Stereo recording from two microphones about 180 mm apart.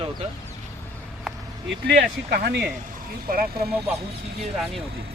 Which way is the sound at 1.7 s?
65° right (ahead or behind).